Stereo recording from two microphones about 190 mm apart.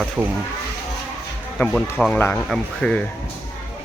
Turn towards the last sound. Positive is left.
turn(degrees=5)  # may be behind; listen again after turning